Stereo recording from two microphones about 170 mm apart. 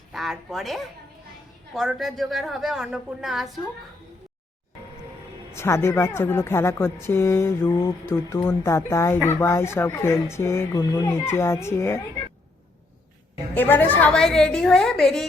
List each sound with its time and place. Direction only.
0.1 s a woman's voice: centre (ahead or behind)
5.5 s speech: 15° left (ahead or behind)
13.5 s a woman's voice: 10° left (ahead or behind)